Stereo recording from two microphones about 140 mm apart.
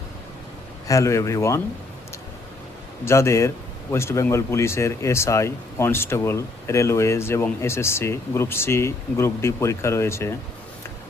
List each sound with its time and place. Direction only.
0.9 s speech: 20° left (ahead or behind)
3.0 s speech: 20° left (ahead or behind)